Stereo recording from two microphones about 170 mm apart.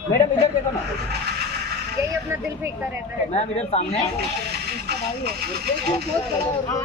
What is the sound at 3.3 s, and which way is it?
Speech, 40° left (ahead or behind).